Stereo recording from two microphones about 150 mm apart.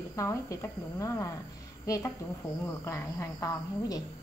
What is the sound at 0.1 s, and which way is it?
Speech, 20° left (ahead or behind).